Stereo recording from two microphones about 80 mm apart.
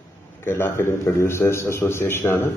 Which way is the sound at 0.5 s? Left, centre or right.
Left.